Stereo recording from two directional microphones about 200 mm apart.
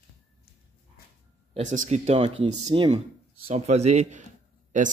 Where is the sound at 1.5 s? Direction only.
40° right (ahead or behind).